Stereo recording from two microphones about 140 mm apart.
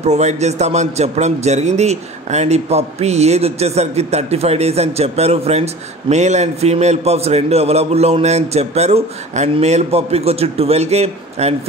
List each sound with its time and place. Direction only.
0.0 s a man's voice: 55° right (ahead or behind)